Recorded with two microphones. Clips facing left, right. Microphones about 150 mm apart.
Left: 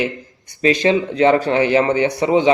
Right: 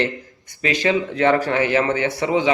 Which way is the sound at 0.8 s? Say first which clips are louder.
Left 2 dB; 20° left (ahead or behind).